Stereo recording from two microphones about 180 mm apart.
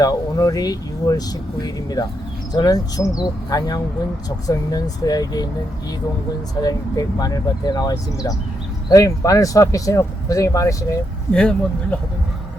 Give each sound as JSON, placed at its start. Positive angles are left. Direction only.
{"t": 0.0, "sound": "speech", "side_deg": 20}
{"t": 6.6, "sound": "speech", "side_deg": 20}
{"t": 11.3, "sound": "speech", "side_deg": 5}